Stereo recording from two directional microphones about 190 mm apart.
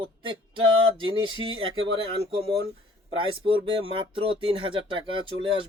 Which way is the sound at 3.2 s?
25° right (ahead or behind).